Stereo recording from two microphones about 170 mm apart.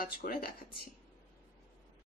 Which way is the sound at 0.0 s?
60° left (ahead or behind).